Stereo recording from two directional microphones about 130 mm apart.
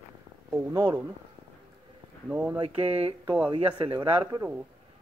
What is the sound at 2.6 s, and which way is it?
Speech, 50° right (ahead or behind).